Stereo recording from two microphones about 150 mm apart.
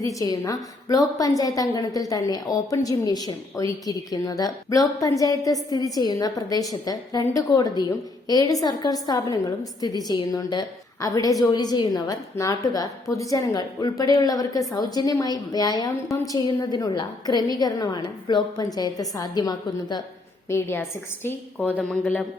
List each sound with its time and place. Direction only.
0.0 s a woman's voice: 20° left (ahead or behind)
20.5 s a woman's voice: 15° left (ahead or behind)